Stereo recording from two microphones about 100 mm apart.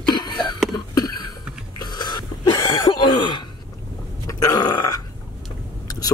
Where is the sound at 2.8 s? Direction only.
50° left (ahead or behind).